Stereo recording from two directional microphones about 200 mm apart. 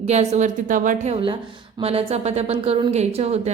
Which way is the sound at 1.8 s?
30° right (ahead or behind).